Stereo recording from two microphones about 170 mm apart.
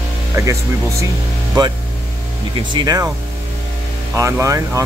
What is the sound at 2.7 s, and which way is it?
Speech, 20° right (ahead or behind).